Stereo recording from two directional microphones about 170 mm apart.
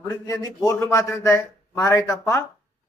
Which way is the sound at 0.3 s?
20° left (ahead or behind).